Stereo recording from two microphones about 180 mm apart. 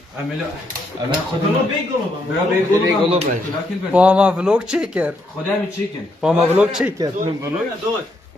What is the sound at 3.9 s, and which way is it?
Speech, 5° right (ahead or behind).